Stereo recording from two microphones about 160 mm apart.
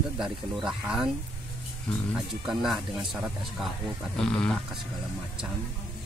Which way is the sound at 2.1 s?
5° right (ahead or behind).